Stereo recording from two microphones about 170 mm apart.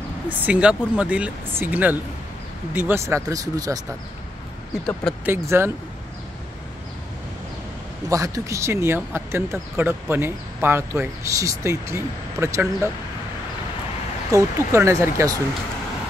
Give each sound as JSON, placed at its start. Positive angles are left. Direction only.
{"t": 0.3, "sound": "speech", "side_deg": -5}
{"t": 5.2, "sound": "speech", "side_deg": -15}
{"t": 8.1, "sound": "speech", "side_deg": -20}
{"t": 14.3, "sound": "speech", "side_deg": -15}